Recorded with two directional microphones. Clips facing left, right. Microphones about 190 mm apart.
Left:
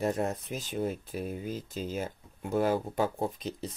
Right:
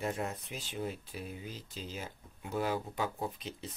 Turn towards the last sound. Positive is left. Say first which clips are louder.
# left 6 dB
turn(degrees=40)  # may be behind; listen again after turning